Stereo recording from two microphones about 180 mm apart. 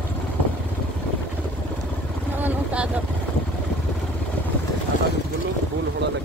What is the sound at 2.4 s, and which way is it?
Vehicle, 5° right (ahead or behind).